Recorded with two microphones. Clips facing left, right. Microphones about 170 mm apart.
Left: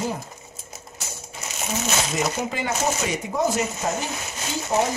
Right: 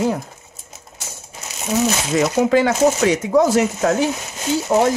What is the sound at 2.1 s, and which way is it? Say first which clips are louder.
Speech: right 10 dB; 90° right.